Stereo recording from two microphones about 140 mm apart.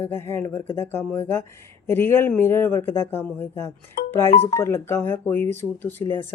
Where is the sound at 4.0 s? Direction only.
90° left.